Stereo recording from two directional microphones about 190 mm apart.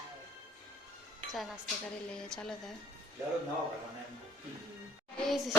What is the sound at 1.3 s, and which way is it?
Speech, centre (ahead or behind).